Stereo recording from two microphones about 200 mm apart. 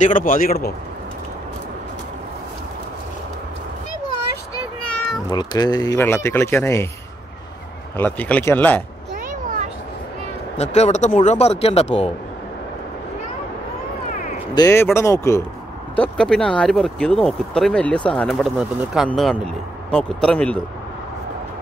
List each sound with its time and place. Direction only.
0.0 s a man's voice: 40° left (ahead or behind)
5.3 s speech: 20° left (ahead or behind)
8.0 s speech: 10° left (ahead or behind)
10.6 s speech: 35° left (ahead or behind)
14.5 s speech: 15° left (ahead or behind)
16.0 s speech: 5° left (ahead or behind)